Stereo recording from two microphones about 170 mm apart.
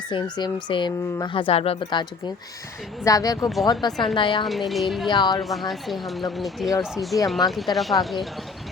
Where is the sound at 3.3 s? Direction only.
Centre (ahead or behind).